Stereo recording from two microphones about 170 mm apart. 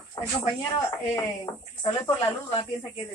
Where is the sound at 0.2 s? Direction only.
20° left (ahead or behind).